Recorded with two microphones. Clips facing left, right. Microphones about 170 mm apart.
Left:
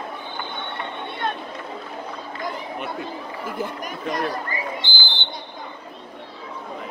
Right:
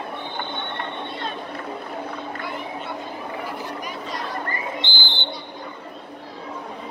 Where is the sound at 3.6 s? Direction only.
50° left (ahead or behind).